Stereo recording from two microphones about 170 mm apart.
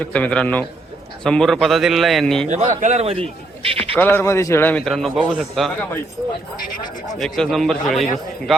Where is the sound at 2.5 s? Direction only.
45° right (ahead or behind).